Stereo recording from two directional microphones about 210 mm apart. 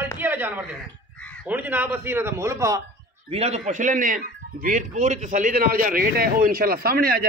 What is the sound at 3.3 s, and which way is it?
Speech, 30° right (ahead or behind).